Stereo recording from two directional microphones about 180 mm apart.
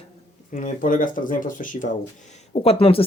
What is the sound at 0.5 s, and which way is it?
Speech, 45° left (ahead or behind).